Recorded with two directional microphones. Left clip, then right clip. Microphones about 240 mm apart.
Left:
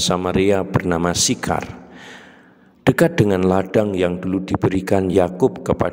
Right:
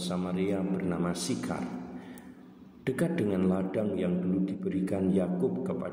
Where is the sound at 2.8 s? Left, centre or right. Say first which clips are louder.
Left 15 dB; left.